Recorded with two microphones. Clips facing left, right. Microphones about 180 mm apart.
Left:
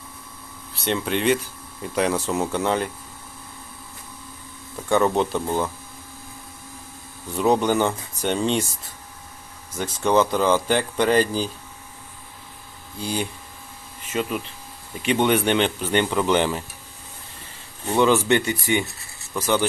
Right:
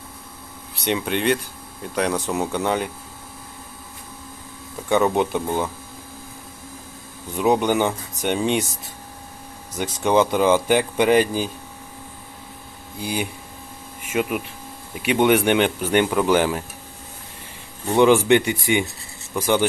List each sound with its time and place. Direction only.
0.8 s speech: centre (ahead or behind)
5.1 s speech: 15° right (ahead or behind)
7.6 s speech: 15° right (ahead or behind)
9.7 s speech: 15° right (ahead or behind)
13.0 s speech: 10° right (ahead or behind)
17.9 s speech: 15° right (ahead or behind)